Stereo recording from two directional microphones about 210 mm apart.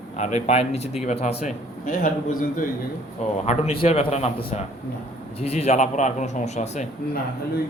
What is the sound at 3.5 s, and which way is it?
A man's voice, 30° left (ahead or behind).